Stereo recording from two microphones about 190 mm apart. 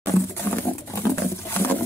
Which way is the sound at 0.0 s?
10° left (ahead or behind).